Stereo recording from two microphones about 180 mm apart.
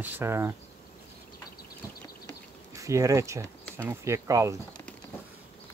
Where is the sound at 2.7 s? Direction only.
15° right (ahead or behind).